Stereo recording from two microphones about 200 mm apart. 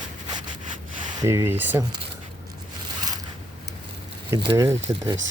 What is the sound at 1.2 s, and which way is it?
Speech, 15° right (ahead or behind).